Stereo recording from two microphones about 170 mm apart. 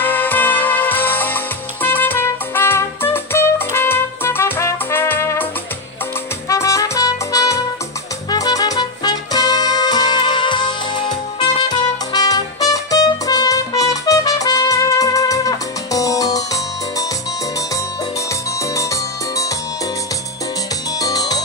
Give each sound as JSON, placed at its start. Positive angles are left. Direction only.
{"t": 0.0, "sound": "music", "side_deg": 10}
{"t": 6.5, "sound": "trumpet", "side_deg": 20}
{"t": 8.3, "sound": "music", "side_deg": 20}
{"t": 21.0, "sound": "music", "side_deg": 20}